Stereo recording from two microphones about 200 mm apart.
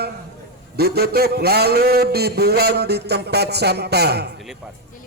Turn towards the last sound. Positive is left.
turn(degrees=-55)  # may be behind; listen again after turning